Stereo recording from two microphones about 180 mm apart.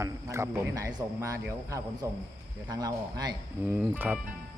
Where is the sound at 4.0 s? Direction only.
10° right (ahead or behind).